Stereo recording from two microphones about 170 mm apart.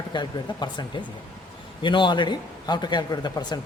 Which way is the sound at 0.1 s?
25° left (ahead or behind).